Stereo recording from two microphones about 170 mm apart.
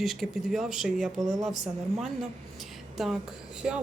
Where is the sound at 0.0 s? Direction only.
Centre (ahead or behind).